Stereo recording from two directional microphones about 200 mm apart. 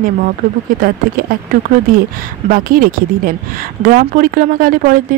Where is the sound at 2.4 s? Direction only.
45° right (ahead or behind).